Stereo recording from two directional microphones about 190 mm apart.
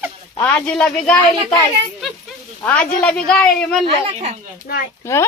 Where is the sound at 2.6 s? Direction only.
10° left (ahead or behind).